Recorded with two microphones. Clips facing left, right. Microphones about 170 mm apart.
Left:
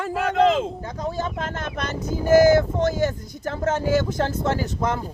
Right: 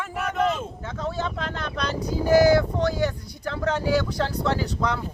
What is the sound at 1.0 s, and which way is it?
Speech, 45° left (ahead or behind).